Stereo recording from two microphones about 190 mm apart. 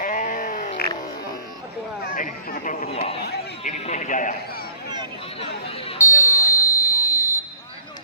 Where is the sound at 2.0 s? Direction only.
45° left (ahead or behind).